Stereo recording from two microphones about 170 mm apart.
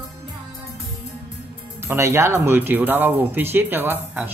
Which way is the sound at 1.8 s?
15° right (ahead or behind).